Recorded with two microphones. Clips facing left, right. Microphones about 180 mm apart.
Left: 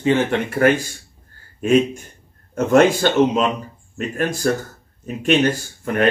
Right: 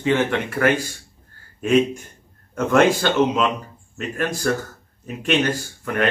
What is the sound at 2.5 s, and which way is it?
Speech, 40° left (ahead or behind).